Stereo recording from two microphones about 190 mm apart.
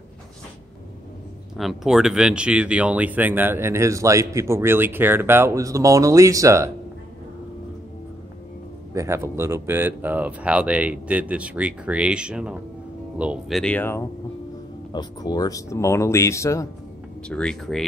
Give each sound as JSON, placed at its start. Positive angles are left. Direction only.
{"t": 1.6, "sound": "speech", "side_deg": 0}
{"t": 8.9, "sound": "speech", "side_deg": -15}
{"t": 14.9, "sound": "speech", "side_deg": 20}
{"t": 17.3, "sound": "speech", "side_deg": 5}